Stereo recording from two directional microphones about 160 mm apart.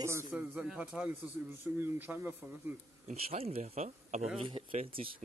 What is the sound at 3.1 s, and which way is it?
Speech, 40° right (ahead or behind).